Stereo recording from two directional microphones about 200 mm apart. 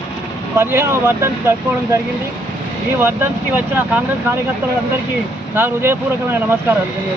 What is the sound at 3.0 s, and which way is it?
Speech, 10° right (ahead or behind).